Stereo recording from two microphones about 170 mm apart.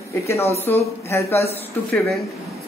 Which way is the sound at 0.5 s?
15° left (ahead or behind).